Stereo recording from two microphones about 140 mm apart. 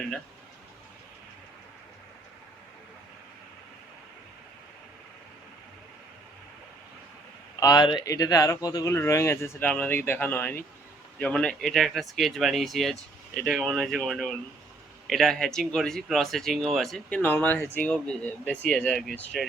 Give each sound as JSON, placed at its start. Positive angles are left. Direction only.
{"t": 7.6, "sound": "speech", "side_deg": 30}